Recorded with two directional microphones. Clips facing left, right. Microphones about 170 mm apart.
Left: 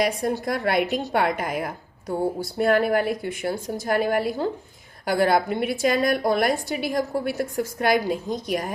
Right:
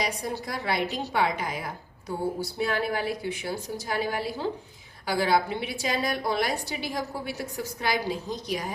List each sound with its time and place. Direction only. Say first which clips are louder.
0.0 s a woman's voice: left 7 dB; 50° left (ahead or behind)